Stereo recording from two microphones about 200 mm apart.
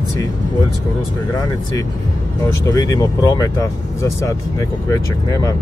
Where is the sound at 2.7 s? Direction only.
20° left (ahead or behind).